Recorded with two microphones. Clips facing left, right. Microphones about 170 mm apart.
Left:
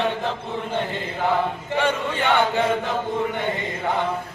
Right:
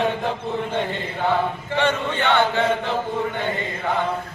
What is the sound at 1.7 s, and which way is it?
Chant, 10° left (ahead or behind).